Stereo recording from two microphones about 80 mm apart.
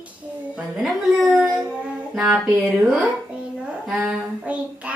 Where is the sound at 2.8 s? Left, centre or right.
Centre.